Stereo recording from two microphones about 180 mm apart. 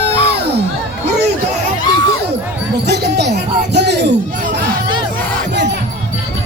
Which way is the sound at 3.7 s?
70° right (ahead or behind).